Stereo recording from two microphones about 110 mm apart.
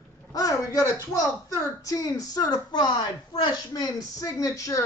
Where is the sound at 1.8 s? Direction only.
35° left (ahead or behind).